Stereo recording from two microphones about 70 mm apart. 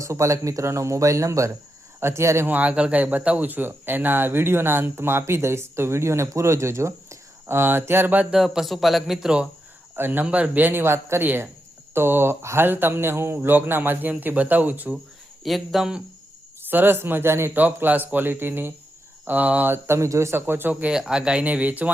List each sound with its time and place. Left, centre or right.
0.0 s speech: right
2.5 s speech: right
8.3 s speech: centre
9.9 s speech: right
15.4 s speech: centre
16.6 s speech: right
17.5 s speech: right
19.7 s speech: right
20.9 s speech: centre